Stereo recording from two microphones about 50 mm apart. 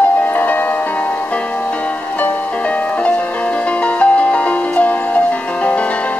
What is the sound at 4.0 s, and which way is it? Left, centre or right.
Music, left.